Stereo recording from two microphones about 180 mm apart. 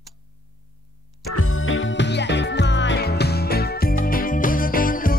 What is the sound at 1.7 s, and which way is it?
Music, 90° left.